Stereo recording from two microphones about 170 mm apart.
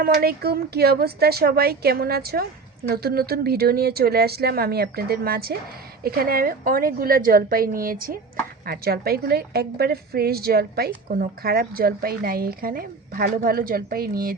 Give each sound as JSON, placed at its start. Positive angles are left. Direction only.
{"t": 0.0, "sound": "a woman's voice", "side_deg": -65}